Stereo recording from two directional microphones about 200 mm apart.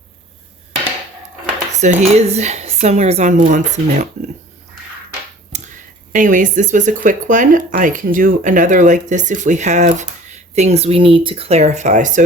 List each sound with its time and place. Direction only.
1.8 s speech: 35° right (ahead or behind)
5.5 s a sound: 35° right (ahead or behind)
6.1 s speech: 40° right (ahead or behind)